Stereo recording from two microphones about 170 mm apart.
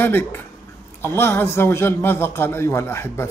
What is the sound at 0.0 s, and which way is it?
A man's voice, 15° left (ahead or behind).